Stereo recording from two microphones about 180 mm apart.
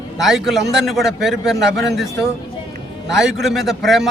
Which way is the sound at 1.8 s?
75° right (ahead or behind).